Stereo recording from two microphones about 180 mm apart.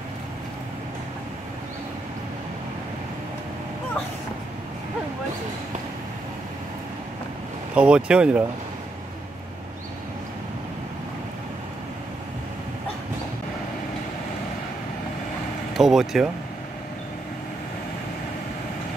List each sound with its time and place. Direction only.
7.7 s speech: 5° right (ahead or behind)
15.7 s speech: centre (ahead or behind)